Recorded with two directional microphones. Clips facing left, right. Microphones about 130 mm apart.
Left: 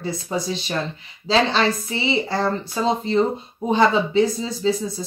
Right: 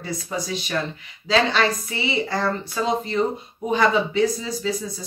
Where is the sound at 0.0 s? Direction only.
30° left (ahead or behind).